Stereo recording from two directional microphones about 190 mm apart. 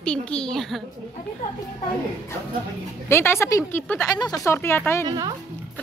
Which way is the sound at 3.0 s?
15° left (ahead or behind).